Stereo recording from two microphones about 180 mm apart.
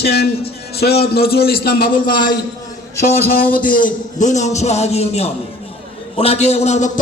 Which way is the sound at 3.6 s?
50° left (ahead or behind).